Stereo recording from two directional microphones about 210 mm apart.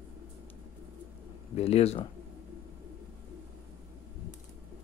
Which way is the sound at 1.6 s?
30° left (ahead or behind).